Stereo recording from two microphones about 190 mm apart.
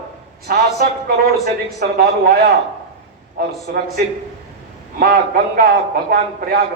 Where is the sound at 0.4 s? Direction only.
55° right (ahead or behind).